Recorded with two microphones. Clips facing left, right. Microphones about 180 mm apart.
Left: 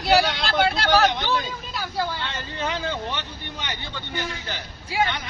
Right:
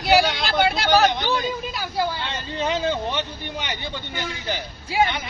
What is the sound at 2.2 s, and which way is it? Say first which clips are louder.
Vehicle: right 3 dB; 20° right (ahead or behind).